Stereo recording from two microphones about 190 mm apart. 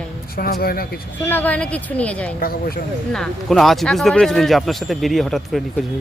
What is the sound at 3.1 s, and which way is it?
Speech, 5° left (ahead or behind).